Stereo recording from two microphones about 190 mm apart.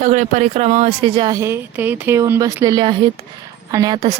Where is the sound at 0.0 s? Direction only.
40° right (ahead or behind).